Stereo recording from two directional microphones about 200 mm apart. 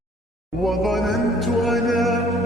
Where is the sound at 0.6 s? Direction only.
Centre (ahead or behind).